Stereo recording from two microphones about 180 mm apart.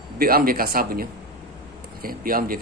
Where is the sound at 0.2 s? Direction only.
55° right (ahead or behind).